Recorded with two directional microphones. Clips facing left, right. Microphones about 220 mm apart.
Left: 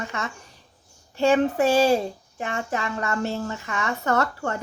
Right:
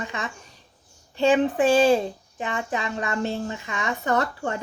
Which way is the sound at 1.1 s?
15° right (ahead or behind).